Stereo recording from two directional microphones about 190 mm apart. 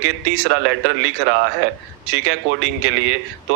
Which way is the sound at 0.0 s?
75° right (ahead or behind).